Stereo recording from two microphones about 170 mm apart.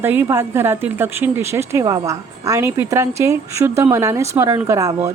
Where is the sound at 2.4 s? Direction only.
15° right (ahead or behind).